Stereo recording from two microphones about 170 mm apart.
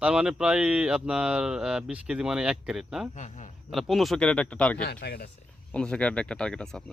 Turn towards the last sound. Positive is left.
turn(degrees=5)  # may be behind; listen again after turning